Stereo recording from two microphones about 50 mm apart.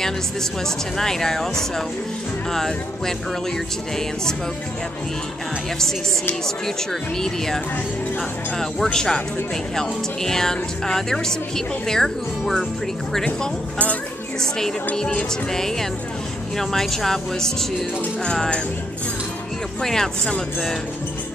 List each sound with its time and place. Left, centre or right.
0.9 s a woman's voice: centre
6.4 s a woman's voice: centre
15.0 s a woman's voice: centre
19.8 s a woman's voice: centre